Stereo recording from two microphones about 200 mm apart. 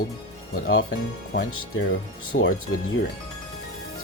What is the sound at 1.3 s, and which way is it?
Speech, 65° left (ahead or behind).